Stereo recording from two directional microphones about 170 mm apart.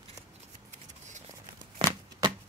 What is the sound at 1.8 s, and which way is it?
Shuffling cards, 25° right (ahead or behind).